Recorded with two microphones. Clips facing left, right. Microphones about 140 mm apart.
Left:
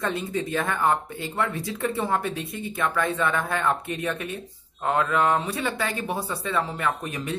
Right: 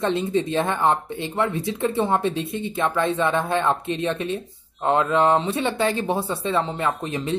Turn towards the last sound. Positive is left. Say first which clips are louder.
# right 3 dB
turn(degrees=-25)  # may be behind; listen again after turning